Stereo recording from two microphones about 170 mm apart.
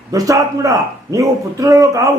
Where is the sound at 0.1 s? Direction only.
20° right (ahead or behind).